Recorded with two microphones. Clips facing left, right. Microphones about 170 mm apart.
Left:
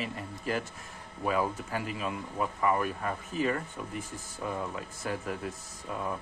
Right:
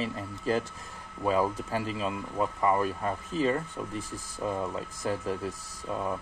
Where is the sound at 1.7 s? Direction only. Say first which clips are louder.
Right 3 dB; 30° right (ahead or behind).